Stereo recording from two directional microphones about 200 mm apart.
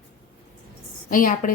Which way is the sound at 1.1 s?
45° left (ahead or behind).